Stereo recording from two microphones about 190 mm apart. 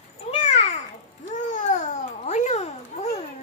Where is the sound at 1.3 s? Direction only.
40° left (ahead or behind).